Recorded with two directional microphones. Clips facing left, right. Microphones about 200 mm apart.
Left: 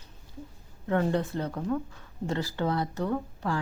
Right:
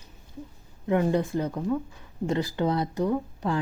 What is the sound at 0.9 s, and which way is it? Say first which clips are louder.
Speech: right 3 dB; 10° right (ahead or behind).